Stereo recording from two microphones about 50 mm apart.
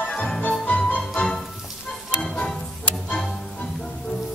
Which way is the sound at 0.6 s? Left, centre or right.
Left.